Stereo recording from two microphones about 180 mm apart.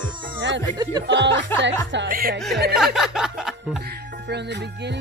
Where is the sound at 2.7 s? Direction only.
Centre (ahead or behind).